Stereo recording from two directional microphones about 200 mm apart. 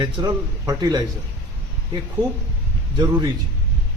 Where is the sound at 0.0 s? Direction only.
20° right (ahead or behind).